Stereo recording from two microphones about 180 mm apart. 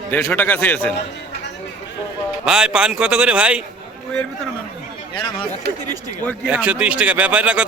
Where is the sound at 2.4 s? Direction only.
5° right (ahead or behind).